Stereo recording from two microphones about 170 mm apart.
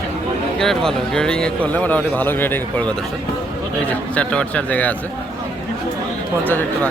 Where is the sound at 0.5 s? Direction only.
Centre (ahead or behind).